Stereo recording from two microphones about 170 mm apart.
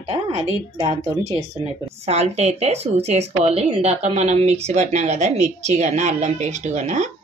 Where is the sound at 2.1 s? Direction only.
40° right (ahead or behind).